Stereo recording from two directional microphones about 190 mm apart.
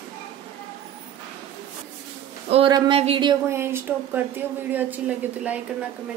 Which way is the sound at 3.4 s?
15° right (ahead or behind).